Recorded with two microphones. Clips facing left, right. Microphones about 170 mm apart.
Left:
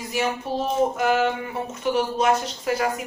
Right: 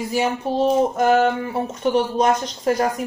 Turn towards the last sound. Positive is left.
turn(degrees=-40)  # may be behind; listen again after turning